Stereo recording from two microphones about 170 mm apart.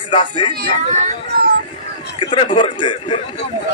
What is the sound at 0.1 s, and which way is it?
Speech, 30° left (ahead or behind).